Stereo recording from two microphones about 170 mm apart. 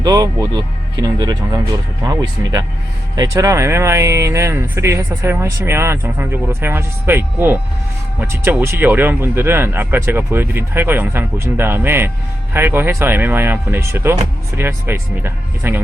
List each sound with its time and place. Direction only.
0.0 s speech: 20° right (ahead or behind)